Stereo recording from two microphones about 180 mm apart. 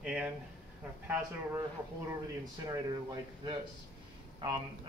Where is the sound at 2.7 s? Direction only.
20° right (ahead or behind).